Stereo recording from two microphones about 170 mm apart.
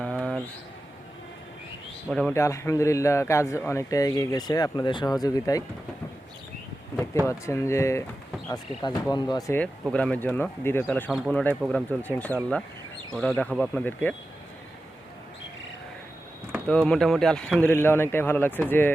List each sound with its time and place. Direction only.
0.0 s a sound: 5° left (ahead or behind)
2.0 s speech: 5° left (ahead or behind)
2.4 s speech: 15° left (ahead or behind)
7.3 s speech: 15° left (ahead or behind)
9.9 s speech: 5° left (ahead or behind)
16.6 s speech: 5° left (ahead or behind)